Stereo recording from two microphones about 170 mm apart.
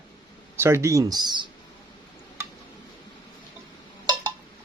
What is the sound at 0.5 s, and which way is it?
Speech, 15° right (ahead or behind).